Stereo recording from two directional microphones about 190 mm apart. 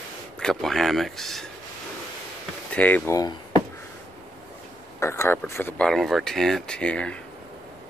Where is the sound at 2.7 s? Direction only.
10° left (ahead or behind).